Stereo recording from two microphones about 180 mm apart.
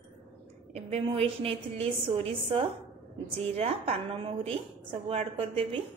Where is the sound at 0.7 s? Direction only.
35° right (ahead or behind).